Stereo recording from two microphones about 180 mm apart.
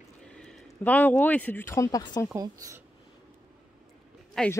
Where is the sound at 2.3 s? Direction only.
20° right (ahead or behind).